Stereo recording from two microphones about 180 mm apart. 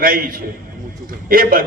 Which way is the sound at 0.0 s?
50° right (ahead or behind).